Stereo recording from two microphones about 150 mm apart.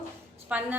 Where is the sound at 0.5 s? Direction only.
10° right (ahead or behind).